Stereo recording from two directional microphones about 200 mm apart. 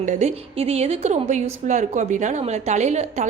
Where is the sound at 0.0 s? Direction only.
35° right (ahead or behind).